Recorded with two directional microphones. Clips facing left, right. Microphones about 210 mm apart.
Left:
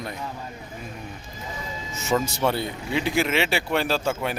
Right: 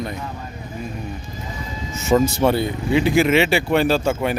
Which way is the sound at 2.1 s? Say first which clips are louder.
Right 7 dB; 20° right (ahead or behind).